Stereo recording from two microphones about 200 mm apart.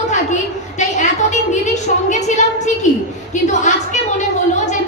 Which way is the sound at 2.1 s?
35° left (ahead or behind).